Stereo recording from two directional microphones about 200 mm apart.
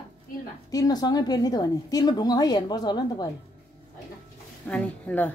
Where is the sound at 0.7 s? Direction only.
20° left (ahead or behind).